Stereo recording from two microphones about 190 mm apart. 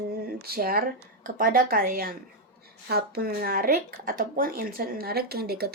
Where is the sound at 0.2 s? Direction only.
55° right (ahead or behind).